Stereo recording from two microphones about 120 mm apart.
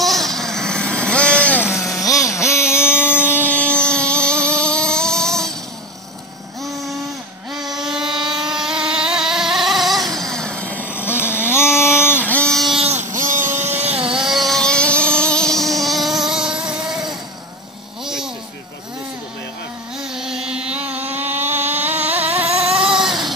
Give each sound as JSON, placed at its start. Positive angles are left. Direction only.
{"t": 0.0, "sound": "vehicle", "side_deg": 0}
{"t": 1.8, "sound": "a sound", "side_deg": 30}
{"t": 3.0, "sound": "vehicle", "side_deg": 20}
{"t": 7.5, "sound": "vehicle", "side_deg": -5}
{"t": 12.1, "sound": "a sound", "side_deg": 15}
{"t": 12.8, "sound": "vehicle", "side_deg": -80}
{"t": 13.4, "sound": "vehicle", "side_deg": -20}
{"t": 13.7, "sound": "vehicle", "side_deg": -55}
{"t": 14.1, "sound": "vehicle", "side_deg": -5}
{"t": 18.0, "sound": "a sound", "side_deg": -5}
{"t": 20.0, "sound": "carnatic music", "side_deg": -5}
{"t": 21.1, "sound": "vehicle", "side_deg": -15}
{"t": 22.8, "sound": "baby cry", "side_deg": -5}